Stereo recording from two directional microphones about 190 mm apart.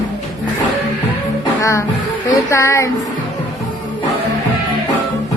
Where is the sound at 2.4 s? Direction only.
15° left (ahead or behind).